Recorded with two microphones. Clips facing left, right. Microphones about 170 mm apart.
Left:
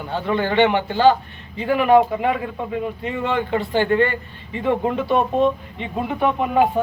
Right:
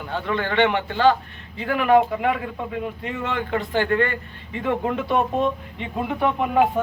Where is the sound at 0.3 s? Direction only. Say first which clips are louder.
Left 3 dB; 25° left (ahead or behind).